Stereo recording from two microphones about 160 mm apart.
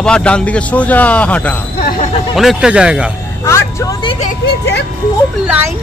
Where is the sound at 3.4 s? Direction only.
20° left (ahead or behind).